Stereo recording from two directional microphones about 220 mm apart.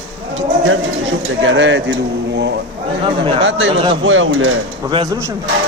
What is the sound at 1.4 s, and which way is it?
Speech, 55° right (ahead or behind).